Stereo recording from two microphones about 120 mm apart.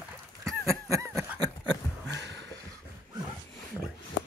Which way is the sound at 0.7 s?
25° right (ahead or behind).